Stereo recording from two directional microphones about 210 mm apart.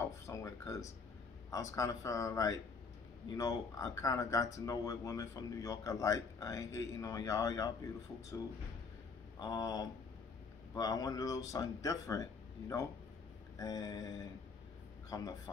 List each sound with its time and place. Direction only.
0.0 s a sound: 15° left (ahead or behind)
1.5 s speech: 15° left (ahead or behind)
9.4 s speech: 20° left (ahead or behind)